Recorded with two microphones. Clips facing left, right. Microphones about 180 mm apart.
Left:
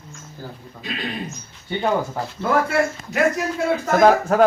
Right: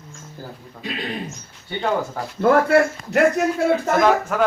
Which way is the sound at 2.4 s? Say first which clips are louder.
Right 5 dB; 65° right (ahead or behind).